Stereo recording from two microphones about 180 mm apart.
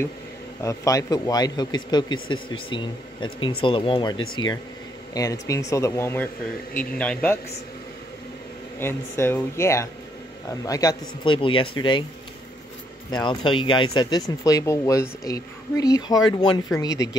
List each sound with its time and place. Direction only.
0.6 s speech: 20° left (ahead or behind)
8.7 s speech: 15° left (ahead or behind)
13.1 s speech: 25° left (ahead or behind)